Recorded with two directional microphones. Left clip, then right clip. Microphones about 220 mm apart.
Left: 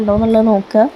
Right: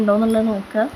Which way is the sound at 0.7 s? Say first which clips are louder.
Left 8 dB; 15° left (ahead or behind).